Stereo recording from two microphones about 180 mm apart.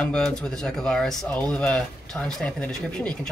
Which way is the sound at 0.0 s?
5° left (ahead or behind).